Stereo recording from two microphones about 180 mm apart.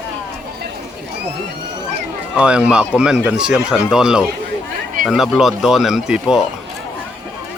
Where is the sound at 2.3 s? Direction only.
5° right (ahead or behind).